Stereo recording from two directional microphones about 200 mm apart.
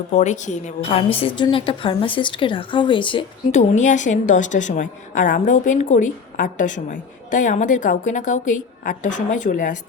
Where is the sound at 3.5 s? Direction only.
35° left (ahead or behind).